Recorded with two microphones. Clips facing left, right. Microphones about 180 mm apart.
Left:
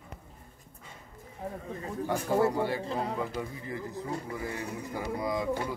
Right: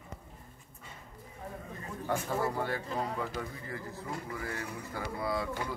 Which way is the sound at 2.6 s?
10° left (ahead or behind).